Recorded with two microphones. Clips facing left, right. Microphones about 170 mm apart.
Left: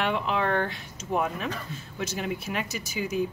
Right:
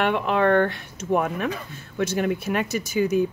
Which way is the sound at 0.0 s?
55° right (ahead or behind).